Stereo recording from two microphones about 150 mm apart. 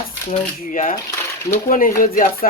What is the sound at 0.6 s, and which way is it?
Speech, 65° left (ahead or behind).